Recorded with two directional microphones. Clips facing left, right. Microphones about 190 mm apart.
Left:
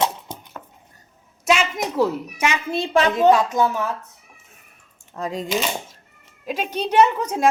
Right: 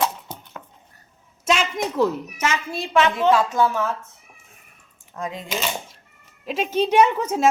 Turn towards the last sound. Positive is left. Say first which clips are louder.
# even
turn(degrees=-5)  # may be behind; listen again after turning